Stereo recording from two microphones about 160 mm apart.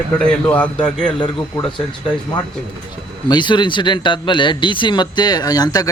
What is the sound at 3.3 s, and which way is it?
Speech, 30° left (ahead or behind).